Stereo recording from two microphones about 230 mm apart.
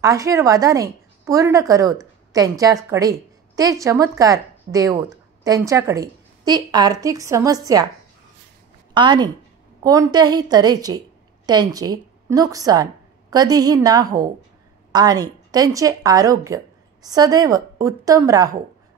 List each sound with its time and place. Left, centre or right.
0.0 s a woman's voice: centre
8.9 s a woman's voice: centre